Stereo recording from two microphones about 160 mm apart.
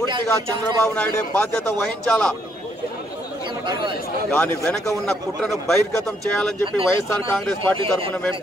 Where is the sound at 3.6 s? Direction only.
30° right (ahead or behind).